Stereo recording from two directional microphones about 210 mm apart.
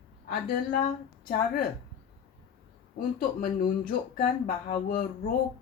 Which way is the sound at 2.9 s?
45° left (ahead or behind).